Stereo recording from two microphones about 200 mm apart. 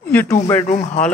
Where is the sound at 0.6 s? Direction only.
35° left (ahead or behind).